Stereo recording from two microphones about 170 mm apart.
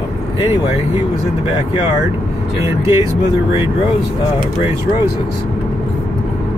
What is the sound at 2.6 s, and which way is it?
Speech, 15° right (ahead or behind).